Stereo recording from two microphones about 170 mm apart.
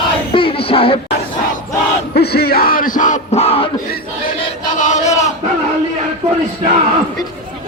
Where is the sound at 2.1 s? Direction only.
70° left (ahead or behind); by 3.6 s 35° left (ahead or behind).